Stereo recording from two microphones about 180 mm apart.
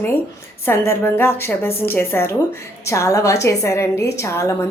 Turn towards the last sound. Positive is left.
turn(degrees=15)  # may be behind; listen again after turning